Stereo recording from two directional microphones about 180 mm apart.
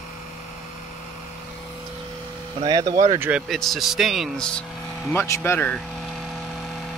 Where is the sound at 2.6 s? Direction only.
20° right (ahead or behind).